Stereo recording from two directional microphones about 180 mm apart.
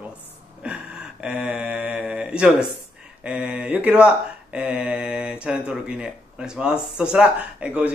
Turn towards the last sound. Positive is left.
turn(degrees=-5)  # may be behind; listen again after turning